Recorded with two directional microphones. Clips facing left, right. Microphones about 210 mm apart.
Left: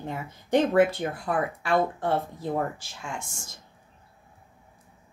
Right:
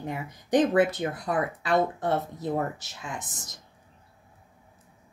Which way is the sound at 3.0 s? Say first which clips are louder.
Left 1 dB; 25° left (ahead or behind).